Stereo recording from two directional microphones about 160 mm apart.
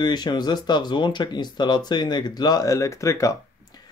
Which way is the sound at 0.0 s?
25° left (ahead or behind).